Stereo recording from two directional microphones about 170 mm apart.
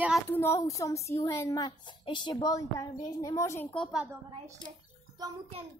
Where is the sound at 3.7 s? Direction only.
5° left (ahead or behind).